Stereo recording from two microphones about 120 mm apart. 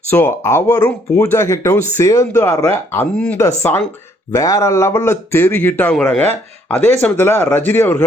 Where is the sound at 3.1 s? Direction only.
10° left (ahead or behind).